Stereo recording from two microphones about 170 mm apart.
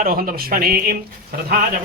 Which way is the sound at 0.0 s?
60° right (ahead or behind).